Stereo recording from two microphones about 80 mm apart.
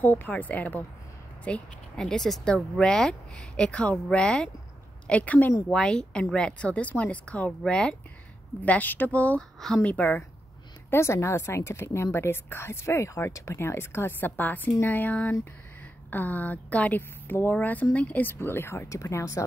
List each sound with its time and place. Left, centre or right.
0.0 s a woman's voice: left
10.9 s a woman's voice: left